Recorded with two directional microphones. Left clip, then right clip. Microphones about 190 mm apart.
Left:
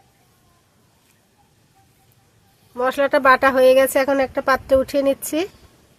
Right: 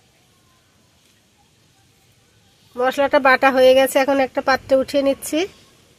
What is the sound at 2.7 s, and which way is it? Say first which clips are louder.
Speech: right 1 dB; 15° right (ahead or behind).